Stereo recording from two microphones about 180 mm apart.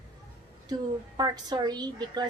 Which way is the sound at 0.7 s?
20° right (ahead or behind).